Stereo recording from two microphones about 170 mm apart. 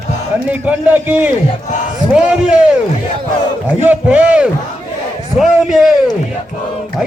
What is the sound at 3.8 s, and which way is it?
A man's voice, 10° right (ahead or behind).